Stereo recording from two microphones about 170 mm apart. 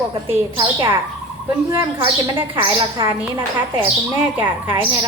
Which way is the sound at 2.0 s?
30° right (ahead or behind).